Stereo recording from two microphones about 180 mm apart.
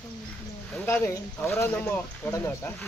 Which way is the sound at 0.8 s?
15° left (ahead or behind).